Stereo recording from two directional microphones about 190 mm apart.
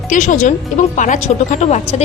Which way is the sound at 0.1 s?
40° left (ahead or behind).